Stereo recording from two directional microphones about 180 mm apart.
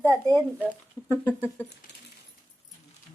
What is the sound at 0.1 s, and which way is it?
Speech, 15° right (ahead or behind).